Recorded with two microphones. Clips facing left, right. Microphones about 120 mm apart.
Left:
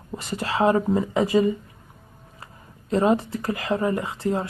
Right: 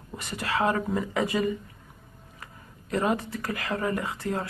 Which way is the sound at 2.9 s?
25° left (ahead or behind).